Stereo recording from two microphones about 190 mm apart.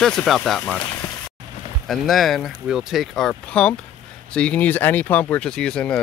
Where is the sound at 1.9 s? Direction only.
Centre (ahead or behind).